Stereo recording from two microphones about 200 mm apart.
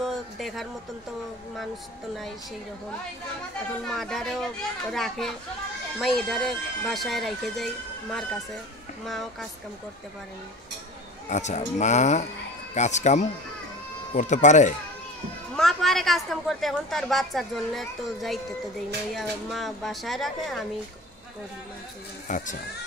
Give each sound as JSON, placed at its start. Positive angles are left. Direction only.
{"t": 0.0, "sound": "a sound", "side_deg": 0}
{"t": 3.8, "sound": "a woman's voice", "side_deg": 0}
{"t": 9.0, "sound": "a woman's voice", "side_deg": 0}
{"t": 11.2, "sound": "speech", "side_deg": 35}
{"t": 15.5, "sound": "a woman's voice", "side_deg": 0}
{"t": 22.3, "sound": "speech", "side_deg": 35}